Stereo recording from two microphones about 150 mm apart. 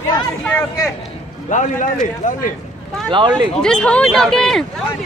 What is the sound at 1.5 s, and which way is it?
A man's voice, 55° left (ahead or behind).